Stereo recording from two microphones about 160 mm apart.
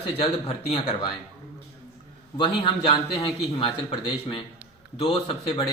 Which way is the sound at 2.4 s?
30° left (ahead or behind).